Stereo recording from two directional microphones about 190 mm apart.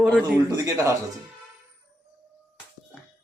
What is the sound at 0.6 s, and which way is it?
Speech, 15° right (ahead or behind).